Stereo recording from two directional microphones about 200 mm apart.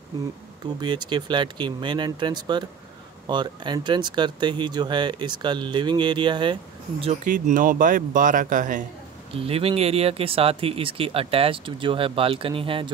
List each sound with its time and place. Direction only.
0.7 s speech: 20° right (ahead or behind)
7.2 s speech: 40° right (ahead or behind)
9.3 s speech: 30° right (ahead or behind)